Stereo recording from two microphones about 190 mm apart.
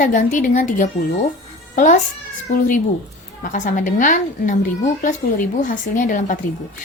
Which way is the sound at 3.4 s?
40° left (ahead or behind).